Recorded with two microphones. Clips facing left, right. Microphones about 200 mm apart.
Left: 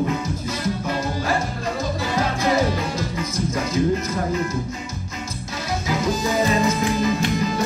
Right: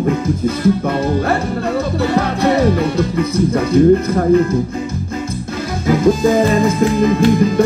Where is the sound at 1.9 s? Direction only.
65° right (ahead or behind).